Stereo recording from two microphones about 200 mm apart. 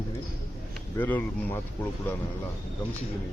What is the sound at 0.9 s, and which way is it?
Speech, 10° left (ahead or behind).